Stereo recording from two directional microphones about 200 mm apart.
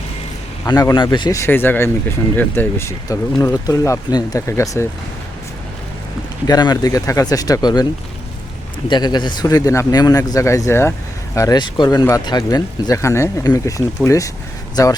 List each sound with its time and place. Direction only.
0.6 s speech: 15° left (ahead or behind)
6.5 s speech: 20° left (ahead or behind)
8.9 s speech: 20° left (ahead or behind)